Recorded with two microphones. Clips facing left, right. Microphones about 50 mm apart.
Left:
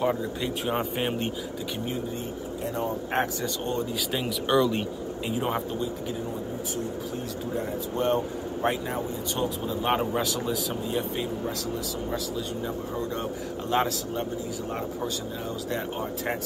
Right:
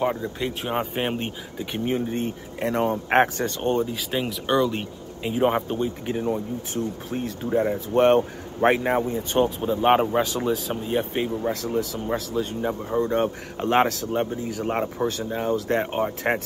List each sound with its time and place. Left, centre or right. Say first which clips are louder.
0.0 s speech: right 2 dB; centre; by 3.0 s right
3.1 s speech: right 7 dB; right
3.8 s speech: right 3 dB; centre
4.5 s speech: right 1 dB; centre
5.3 s speech: right 7 dB; right